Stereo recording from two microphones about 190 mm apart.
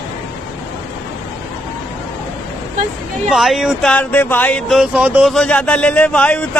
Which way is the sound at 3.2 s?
Centre (ahead or behind).